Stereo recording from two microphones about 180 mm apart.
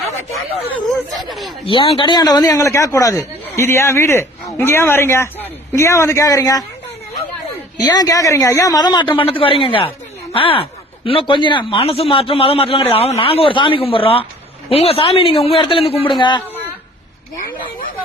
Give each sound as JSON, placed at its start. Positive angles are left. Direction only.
{"t": 1.2, "sound": "speech", "side_deg": 0}
{"t": 1.6, "sound": "a man's voice", "side_deg": 30}
{"t": 7.8, "sound": "speech", "side_deg": 20}